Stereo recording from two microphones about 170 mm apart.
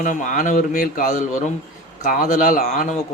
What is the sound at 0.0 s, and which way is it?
A man's voice, 50° left (ahead or behind).